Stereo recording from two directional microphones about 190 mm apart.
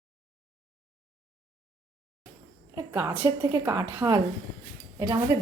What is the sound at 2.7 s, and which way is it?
A woman's voice, 15° right (ahead or behind).